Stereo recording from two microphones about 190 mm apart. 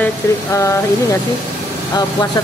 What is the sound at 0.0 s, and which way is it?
Speech, 15° left (ahead or behind).